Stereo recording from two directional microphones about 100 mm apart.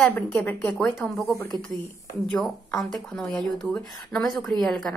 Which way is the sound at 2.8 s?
5° left (ahead or behind).